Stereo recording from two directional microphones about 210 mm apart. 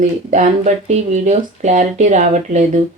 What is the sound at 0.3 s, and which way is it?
Speech, 35° right (ahead or behind).